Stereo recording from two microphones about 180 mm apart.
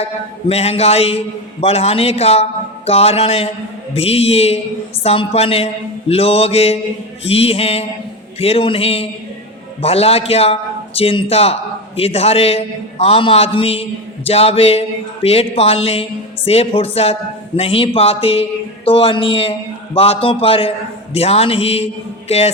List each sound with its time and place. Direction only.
0.0 s a man's voice: 35° left (ahead or behind)